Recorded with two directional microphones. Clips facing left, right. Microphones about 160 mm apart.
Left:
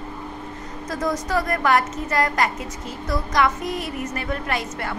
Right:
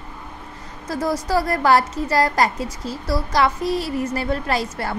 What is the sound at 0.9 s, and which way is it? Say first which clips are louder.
A woman's voice: right 3 dB; 30° right (ahead or behind).